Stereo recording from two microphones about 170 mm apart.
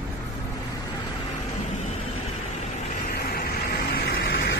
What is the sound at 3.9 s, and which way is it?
Vehicle, 65° left (ahead or behind).